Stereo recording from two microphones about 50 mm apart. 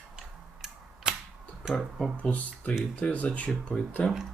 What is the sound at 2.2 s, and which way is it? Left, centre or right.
Speech, left.